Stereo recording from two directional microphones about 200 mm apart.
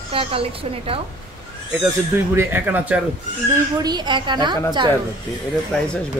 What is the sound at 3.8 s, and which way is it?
Speech, 20° right (ahead or behind).